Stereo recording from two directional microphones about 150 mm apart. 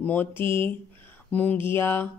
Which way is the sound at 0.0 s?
10° left (ahead or behind).